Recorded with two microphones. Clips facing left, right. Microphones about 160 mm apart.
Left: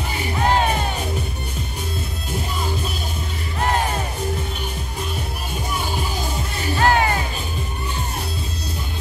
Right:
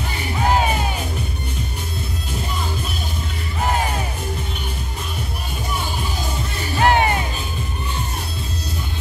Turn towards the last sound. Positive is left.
turn(degrees=-20)  # may be behind; listen again after turning